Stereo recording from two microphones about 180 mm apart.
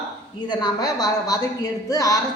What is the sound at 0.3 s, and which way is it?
A woman's voice, 25° left (ahead or behind).